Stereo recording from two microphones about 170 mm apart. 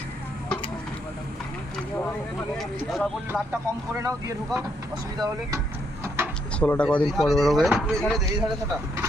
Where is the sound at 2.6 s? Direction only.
Centre (ahead or behind).